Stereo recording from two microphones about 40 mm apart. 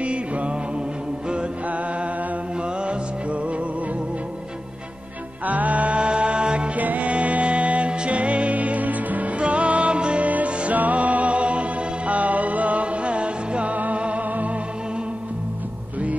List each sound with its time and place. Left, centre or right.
0.0 s music: right
2.8 s music: right
5.4 s music: right
5.9 s music: right
6.8 s music: right
10.3 s music: right